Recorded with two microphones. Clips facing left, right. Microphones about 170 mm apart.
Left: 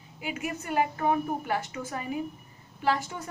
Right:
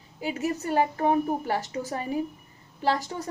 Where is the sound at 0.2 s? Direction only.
35° right (ahead or behind).